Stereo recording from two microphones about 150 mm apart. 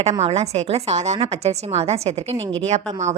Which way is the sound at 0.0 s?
45° right (ahead or behind).